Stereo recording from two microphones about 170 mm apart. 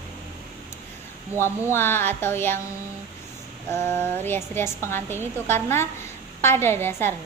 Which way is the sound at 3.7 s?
10° left (ahead or behind).